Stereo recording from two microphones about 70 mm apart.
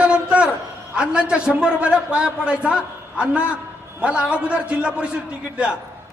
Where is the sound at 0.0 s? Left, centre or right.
Centre.